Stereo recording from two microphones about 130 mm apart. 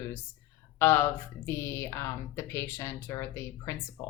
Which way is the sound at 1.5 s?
20° left (ahead or behind).